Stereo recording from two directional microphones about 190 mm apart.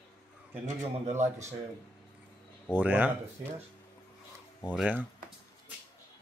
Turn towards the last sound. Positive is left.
turn(degrees=-5)  # may be behind; listen again after turning